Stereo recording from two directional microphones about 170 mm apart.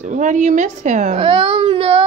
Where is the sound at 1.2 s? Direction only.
30° right (ahead or behind).